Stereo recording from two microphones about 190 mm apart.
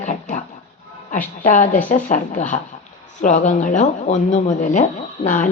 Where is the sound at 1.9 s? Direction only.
40° left (ahead or behind).